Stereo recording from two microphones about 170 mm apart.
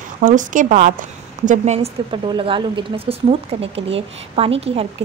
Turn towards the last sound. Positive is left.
turn(degrees=-35)  # may be behind; listen again after turning